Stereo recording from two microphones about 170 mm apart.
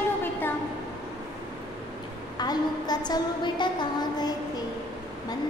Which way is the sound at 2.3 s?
25° left (ahead or behind).